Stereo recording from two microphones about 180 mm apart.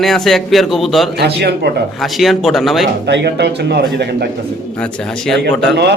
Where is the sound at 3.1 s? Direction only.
75° right (ahead or behind).